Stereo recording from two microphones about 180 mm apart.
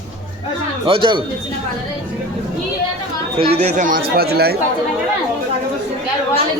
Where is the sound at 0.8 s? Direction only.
25° right (ahead or behind).